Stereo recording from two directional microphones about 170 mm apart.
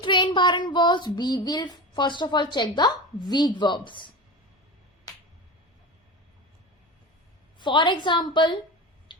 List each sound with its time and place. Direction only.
0.0 s speech: 30° left (ahead or behind)
7.6 s speech: 25° left (ahead or behind)